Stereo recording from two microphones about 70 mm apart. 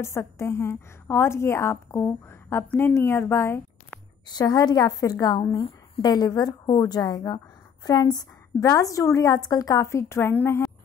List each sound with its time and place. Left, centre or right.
0.0 s a woman's voice: left
4.3 s a woman's voice: left
8.6 s a woman's voice: left
9.8 s a woman's voice: left